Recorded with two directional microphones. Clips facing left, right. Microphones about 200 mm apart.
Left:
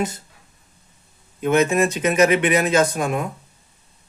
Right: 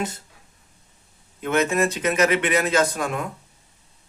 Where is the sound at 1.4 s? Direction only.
15° left (ahead or behind).